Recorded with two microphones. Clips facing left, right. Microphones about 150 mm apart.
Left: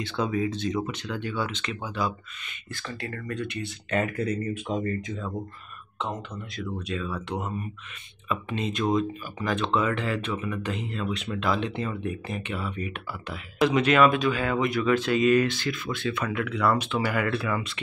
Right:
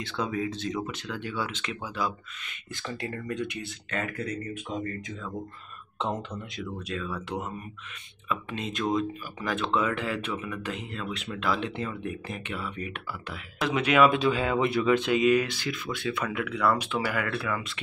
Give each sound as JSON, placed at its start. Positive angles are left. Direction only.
{"t": 0.1, "sound": "speech", "side_deg": 0}
{"t": 2.7, "sound": "speech", "side_deg": -20}
{"t": 3.9, "sound": "speech", "side_deg": 25}
{"t": 4.7, "sound": "speech", "side_deg": 40}
{"t": 5.9, "sound": "speech", "side_deg": -30}
{"t": 6.6, "sound": "speech", "side_deg": 0}
{"t": 14.1, "sound": "speech", "side_deg": -25}